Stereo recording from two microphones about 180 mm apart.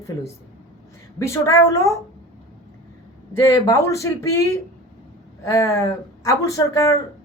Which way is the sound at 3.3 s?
15° left (ahead or behind).